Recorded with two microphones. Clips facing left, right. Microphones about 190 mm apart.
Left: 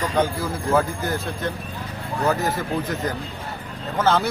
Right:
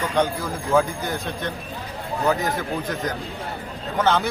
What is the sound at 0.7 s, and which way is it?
Speech, centre (ahead or behind).